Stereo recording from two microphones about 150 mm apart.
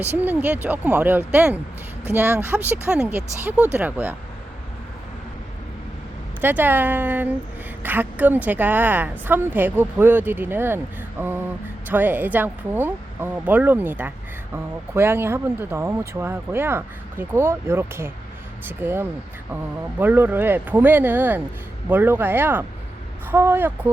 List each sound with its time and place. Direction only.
0.2 s speech: 10° right (ahead or behind)
6.4 s speech: 10° right (ahead or behind)